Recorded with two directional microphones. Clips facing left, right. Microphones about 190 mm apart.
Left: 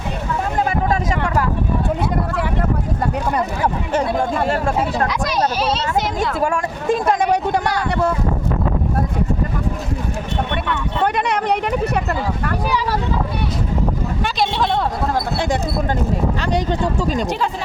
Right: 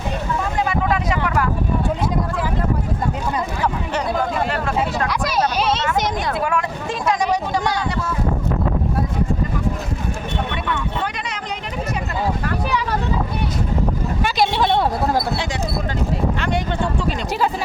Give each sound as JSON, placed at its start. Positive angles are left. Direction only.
{"t": 0.6, "sound": "vehicle", "side_deg": 45}
{"t": 6.6, "sound": "speech", "side_deg": 50}
{"t": 11.0, "sound": "a sound", "side_deg": 55}
{"t": 14.3, "sound": "a sound", "side_deg": -5}
{"t": 15.4, "sound": "speech", "side_deg": 50}
{"t": 16.4, "sound": "speech", "side_deg": 40}